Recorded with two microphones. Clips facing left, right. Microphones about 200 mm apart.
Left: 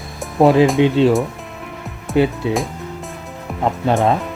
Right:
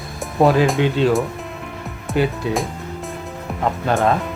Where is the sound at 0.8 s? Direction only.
25° left (ahead or behind).